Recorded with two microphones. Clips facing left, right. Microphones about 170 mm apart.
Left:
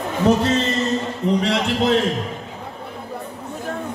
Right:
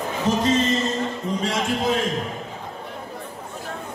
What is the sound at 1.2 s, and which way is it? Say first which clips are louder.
Speech: left 7 dB; 70° left (ahead or behind).